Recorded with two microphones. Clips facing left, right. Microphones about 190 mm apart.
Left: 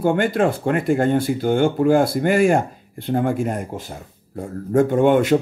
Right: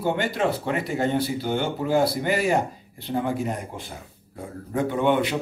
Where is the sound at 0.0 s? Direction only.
50° left (ahead or behind).